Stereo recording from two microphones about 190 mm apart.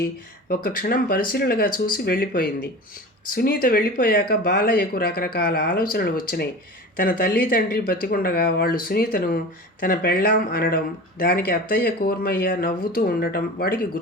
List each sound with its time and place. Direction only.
0.0 s speech: 50° left (ahead or behind)